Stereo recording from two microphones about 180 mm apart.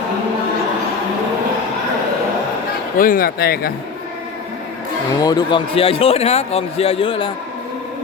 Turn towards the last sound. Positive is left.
turn(degrees=30)  # may be behind; listen again after turning